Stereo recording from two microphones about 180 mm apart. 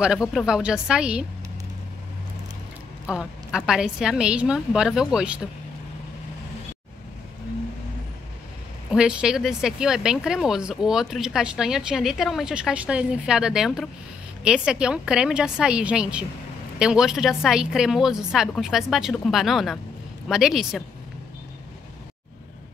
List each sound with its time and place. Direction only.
0.0 s speech: 5° right (ahead or behind)
3.1 s speech: 5° right (ahead or behind)
8.9 s speech: 5° right (ahead or behind)